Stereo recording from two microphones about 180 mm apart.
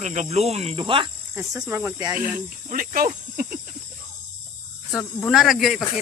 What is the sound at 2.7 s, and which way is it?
Speech, 50° right (ahead or behind).